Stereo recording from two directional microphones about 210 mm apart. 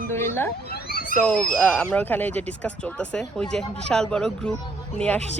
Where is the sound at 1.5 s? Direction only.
5° left (ahead or behind).